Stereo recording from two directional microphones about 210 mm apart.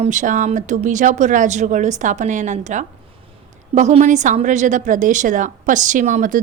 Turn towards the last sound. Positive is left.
turn(degrees=-40)  # may be behind; listen again after turning